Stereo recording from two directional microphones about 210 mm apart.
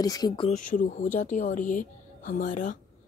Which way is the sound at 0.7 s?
40° left (ahead or behind).